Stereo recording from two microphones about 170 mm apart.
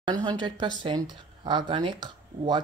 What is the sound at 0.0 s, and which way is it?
Speech, 25° right (ahead or behind).